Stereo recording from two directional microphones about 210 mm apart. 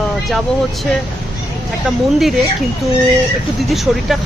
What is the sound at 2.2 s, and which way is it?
Speech, centre (ahead or behind).